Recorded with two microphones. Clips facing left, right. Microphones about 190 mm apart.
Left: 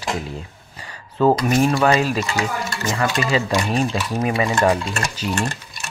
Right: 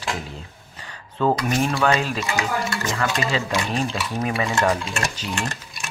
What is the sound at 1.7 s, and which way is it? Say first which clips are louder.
Speech: left 4 dB; 10° left (ahead or behind).